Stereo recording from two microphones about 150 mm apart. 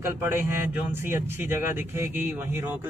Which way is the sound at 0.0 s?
20° right (ahead or behind).